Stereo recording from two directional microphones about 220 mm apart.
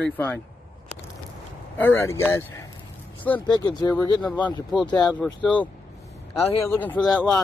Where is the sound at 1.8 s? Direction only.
10° left (ahead or behind).